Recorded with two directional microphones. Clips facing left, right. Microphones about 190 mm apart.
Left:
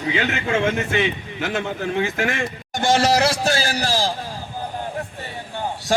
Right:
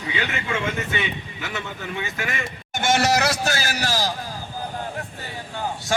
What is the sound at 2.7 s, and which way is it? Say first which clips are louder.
A man's voice: left 3 dB; 35° left (ahead or behind).